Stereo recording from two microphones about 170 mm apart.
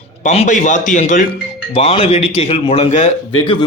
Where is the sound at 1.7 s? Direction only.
35° left (ahead or behind).